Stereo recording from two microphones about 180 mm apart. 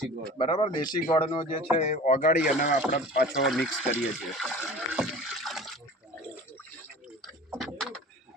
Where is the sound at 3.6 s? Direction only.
5° left (ahead or behind).